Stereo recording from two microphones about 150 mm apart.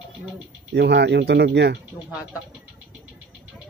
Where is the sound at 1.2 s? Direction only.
90° right.